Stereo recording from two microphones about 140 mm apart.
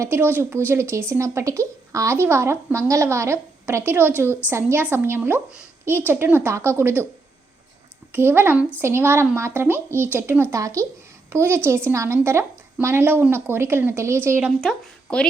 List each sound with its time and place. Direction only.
0.0 s a woman's voice: 15° right (ahead or behind)
8.1 s a woman's voice: 15° right (ahead or behind)
14.6 s speech: centre (ahead or behind)